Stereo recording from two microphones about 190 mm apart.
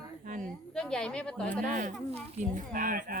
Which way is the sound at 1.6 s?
40° right (ahead or behind).